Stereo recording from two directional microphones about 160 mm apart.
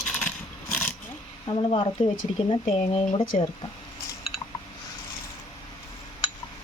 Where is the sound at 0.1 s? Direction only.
10° left (ahead or behind).